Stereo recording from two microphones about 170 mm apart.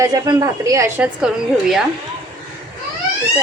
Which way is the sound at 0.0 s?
20° right (ahead or behind).